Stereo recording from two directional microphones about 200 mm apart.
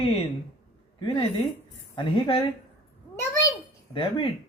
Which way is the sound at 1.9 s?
25° left (ahead or behind).